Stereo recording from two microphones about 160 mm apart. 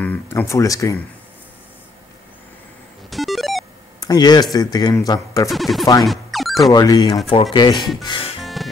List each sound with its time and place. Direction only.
0.0 s speech: 10° left (ahead or behind)
3.1 s music: centre (ahead or behind)
4.0 s speech: 25° left (ahead or behind)
5.5 s music: centre (ahead or behind)
6.7 s speech: 25° left (ahead or behind)
8.0 s music: 35° left (ahead or behind)
8.4 s music: centre (ahead or behind)